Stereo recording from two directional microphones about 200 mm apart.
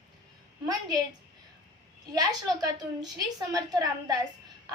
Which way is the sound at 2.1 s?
20° right (ahead or behind).